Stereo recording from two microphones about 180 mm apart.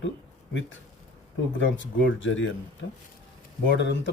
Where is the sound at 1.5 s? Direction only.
90° left.